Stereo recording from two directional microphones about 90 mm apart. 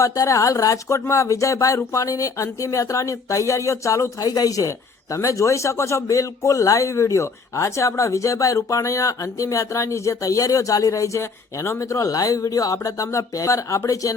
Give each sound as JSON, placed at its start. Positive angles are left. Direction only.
{"t": 0.0, "sound": "a man's voice", "side_deg": 35}